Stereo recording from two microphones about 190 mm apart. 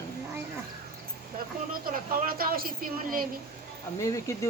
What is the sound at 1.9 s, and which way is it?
A woman's voice, 50° right (ahead or behind).